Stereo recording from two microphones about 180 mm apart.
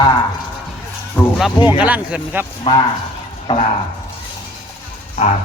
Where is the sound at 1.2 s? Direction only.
10° left (ahead or behind).